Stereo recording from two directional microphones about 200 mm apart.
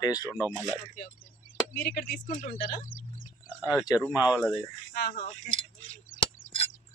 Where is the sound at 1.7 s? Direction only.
50° left (ahead or behind).